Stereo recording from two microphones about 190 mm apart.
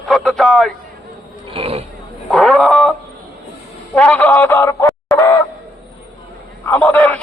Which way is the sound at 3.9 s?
5° left (ahead or behind).